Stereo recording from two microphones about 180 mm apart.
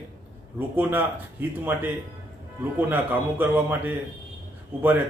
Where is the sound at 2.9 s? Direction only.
10° right (ahead or behind).